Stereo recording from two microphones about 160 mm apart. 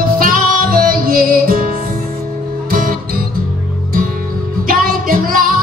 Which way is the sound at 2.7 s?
60° right (ahead or behind).